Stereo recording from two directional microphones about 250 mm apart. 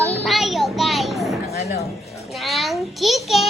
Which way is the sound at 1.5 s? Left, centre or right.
Left.